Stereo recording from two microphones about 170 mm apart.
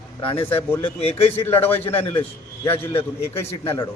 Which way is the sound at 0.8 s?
35° left (ahead or behind).